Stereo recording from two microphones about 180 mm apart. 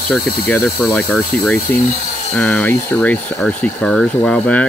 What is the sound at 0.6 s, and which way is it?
Speech, 15° left (ahead or behind).